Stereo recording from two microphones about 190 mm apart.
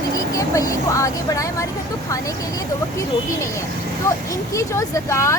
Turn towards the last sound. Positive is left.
turn(degrees=15)  # may be behind; listen again after turning